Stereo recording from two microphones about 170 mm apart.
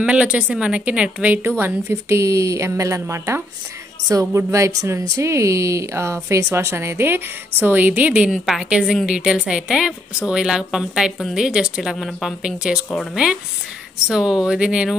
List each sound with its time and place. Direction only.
0.0 s a woman's voice: 5° right (ahead or behind)